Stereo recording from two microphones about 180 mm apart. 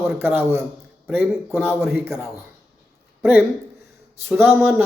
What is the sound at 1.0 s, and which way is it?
Speech, centre (ahead or behind).